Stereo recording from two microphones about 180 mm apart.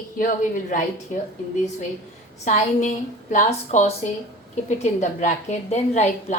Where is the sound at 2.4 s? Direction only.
40° left (ahead or behind).